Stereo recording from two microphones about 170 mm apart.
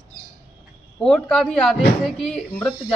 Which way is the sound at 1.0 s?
5° left (ahead or behind).